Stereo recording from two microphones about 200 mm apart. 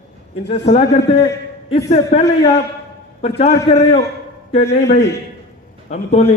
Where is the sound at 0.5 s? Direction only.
30° left (ahead or behind).